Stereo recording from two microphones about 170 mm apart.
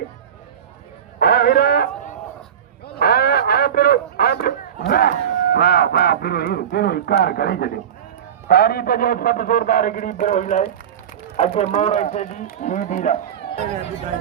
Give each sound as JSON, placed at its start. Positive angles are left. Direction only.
{"t": 1.2, "sound": "a man's voice", "side_deg": 65}
{"t": 2.8, "sound": "radio", "side_deg": 65}
{"t": 4.9, "sound": "a sound", "side_deg": 65}
{"t": 11.3, "sound": "a man's voice", "side_deg": 40}